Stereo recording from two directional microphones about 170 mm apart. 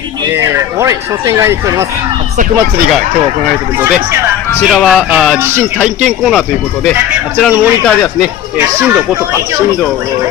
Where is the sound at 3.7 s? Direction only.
15° right (ahead or behind).